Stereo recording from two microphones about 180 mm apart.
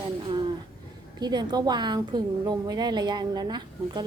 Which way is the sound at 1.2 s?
25° right (ahead or behind).